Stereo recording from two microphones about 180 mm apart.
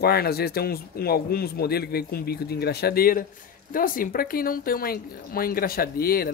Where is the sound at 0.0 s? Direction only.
60° left (ahead or behind).